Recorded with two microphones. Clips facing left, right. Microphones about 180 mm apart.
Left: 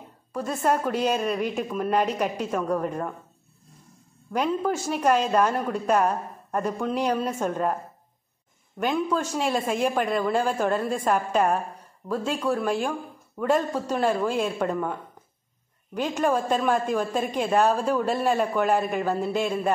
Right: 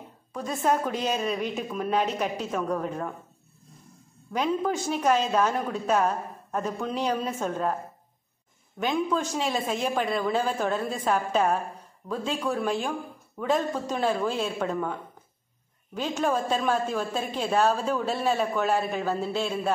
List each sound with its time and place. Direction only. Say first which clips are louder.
0.3 s speech: left 1 dB; 10° left (ahead or behind)
4.3 s speech: left 1 dB; 5° left (ahead or behind)
8.7 s speech: left 1 dB; 5° left (ahead or behind)